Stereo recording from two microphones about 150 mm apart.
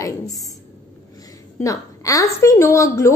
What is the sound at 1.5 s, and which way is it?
A woman's voice, 20° left (ahead or behind).